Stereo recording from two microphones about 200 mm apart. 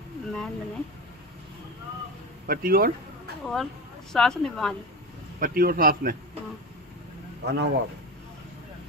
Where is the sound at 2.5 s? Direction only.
45° right (ahead or behind).